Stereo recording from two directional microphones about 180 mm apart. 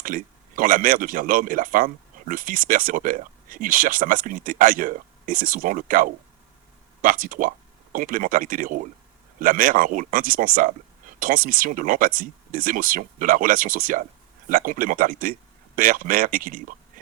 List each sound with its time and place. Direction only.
0.0 s speech: 50° right (ahead or behind)